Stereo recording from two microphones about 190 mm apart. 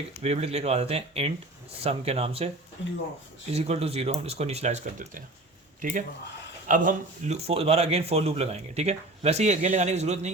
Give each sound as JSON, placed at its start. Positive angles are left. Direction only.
{"t": 0.2, "sound": "a man's voice", "side_deg": -35}
{"t": 3.5, "sound": "a man's voice", "side_deg": -35}
{"t": 6.7, "sound": "a man's voice", "side_deg": -45}